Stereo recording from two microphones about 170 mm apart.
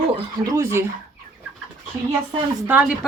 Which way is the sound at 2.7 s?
10° right (ahead or behind).